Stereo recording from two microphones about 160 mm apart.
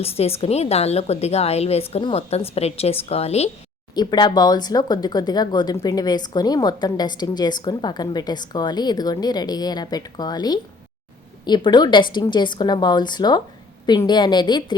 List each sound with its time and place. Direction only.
0.0 s a woman's voice: 40° left (ahead or behind)
3.9 s a woman's voice: 25° left (ahead or behind)